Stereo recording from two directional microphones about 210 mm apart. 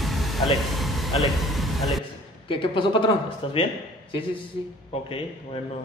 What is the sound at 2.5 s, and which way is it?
Speech, 25° left (ahead or behind).